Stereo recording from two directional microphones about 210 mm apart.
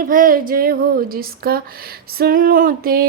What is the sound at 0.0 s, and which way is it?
A woman's voice, 40° right (ahead or behind).